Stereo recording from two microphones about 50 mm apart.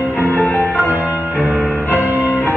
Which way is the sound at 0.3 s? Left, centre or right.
Left.